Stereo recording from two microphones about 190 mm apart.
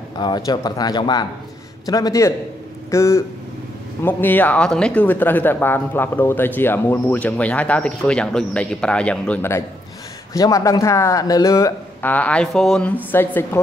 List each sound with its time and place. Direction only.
0.2 s speech: 20° left (ahead or behind)